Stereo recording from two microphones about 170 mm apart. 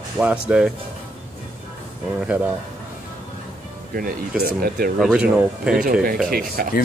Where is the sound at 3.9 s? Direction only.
60° right (ahead or behind).